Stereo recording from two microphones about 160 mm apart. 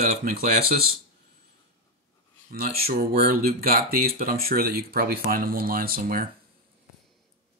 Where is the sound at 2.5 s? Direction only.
70° right (ahead or behind).